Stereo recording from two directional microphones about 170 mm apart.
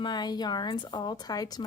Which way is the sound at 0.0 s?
25° left (ahead or behind).